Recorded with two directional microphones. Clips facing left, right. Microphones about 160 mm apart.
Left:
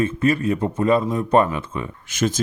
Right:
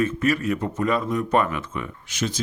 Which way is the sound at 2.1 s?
50° left (ahead or behind).